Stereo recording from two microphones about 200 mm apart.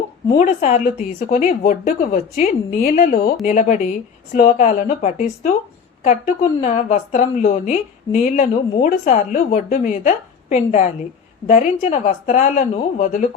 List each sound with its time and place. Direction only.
0.3 s a woman's voice: 35° left (ahead or behind)